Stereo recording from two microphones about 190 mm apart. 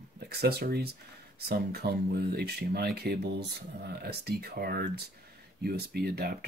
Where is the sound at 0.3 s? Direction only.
55° right (ahead or behind).